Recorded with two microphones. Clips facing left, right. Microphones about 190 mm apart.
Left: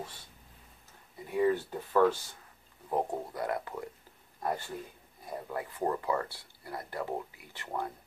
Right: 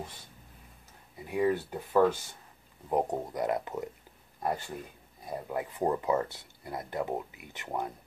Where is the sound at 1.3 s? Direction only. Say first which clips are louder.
Even; 10° right (ahead or behind).